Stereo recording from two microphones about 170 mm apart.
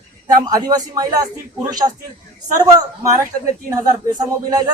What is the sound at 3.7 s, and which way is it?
Speech, 20° right (ahead or behind).